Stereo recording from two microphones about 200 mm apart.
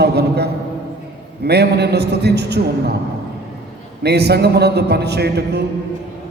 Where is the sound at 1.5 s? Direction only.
55° right (ahead or behind).